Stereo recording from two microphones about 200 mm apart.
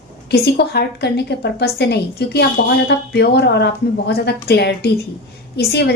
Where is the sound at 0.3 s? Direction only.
55° left (ahead or behind).